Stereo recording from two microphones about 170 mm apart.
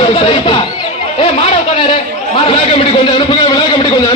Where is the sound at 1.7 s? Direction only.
30° left (ahead or behind).